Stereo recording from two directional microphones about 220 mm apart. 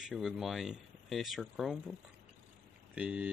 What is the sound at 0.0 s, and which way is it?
Speech, centre (ahead or behind).